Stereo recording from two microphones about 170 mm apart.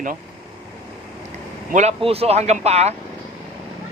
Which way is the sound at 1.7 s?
40° right (ahead or behind).